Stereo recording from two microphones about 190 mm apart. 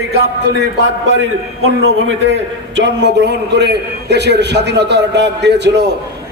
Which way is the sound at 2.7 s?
70° right (ahead or behind).